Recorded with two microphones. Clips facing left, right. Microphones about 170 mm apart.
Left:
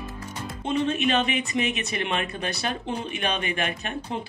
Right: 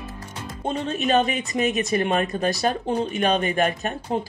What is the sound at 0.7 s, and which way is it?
Speech, 40° right (ahead or behind).